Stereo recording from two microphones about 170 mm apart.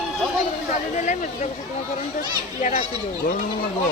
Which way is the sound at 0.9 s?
45° left (ahead or behind).